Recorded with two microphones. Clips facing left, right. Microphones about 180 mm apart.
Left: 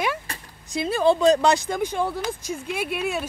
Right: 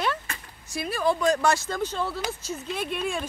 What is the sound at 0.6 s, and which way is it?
A woman's voice, 25° left (ahead or behind).